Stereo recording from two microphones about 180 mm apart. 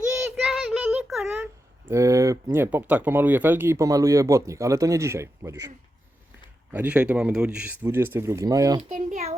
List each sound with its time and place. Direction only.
0.4 s child singing: centre (ahead or behind)
0.9 s a sound: 5° right (ahead or behind)
1.9 s speech: 15° right (ahead or behind)
6.7 s speech: 10° right (ahead or behind)
8.8 s a child's voice: 45° right (ahead or behind)